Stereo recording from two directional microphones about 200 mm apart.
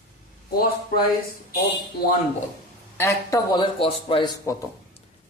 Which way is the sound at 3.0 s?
15° left (ahead or behind).